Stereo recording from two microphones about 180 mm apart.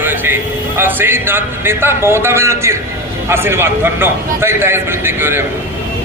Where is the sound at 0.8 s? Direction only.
10° right (ahead or behind).